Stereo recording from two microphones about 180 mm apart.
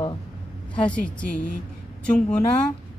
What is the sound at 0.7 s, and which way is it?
Speech, 5° left (ahead or behind).